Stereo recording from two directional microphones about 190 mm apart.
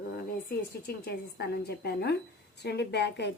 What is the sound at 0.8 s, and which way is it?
A woman's voice, 55° left (ahead or behind).